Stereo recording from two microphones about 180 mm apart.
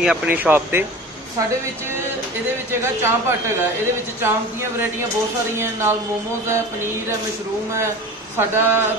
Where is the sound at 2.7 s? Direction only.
15° right (ahead or behind).